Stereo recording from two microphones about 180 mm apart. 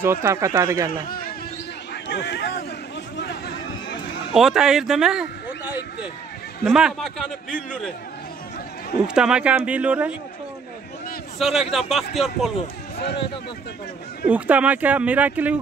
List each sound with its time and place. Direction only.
0.0 s speech: 15° right (ahead or behind)
1.0 s a sound: 55° left (ahead or behind)
2.0 s a sound: 70° left (ahead or behind)
4.3 s a man's voice: centre (ahead or behind)
9.0 s a man's voice: 5° right (ahead or behind)
11.3 s a man's voice: centre (ahead or behind)
14.3 s speech: 10° right (ahead or behind)